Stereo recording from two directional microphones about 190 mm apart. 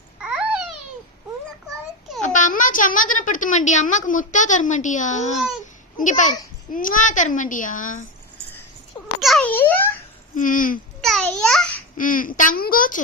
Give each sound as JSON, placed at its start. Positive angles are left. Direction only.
{"t": 0.2, "sound": "babbling", "side_deg": -5}
{"t": 2.2, "sound": "speech", "side_deg": 40}
{"t": 9.2, "sound": "a sound", "side_deg": 5}
{"t": 10.3, "sound": "speech", "side_deg": 45}
{"t": 11.0, "sound": "a sound", "side_deg": 5}
{"t": 11.9, "sound": "speech", "side_deg": 45}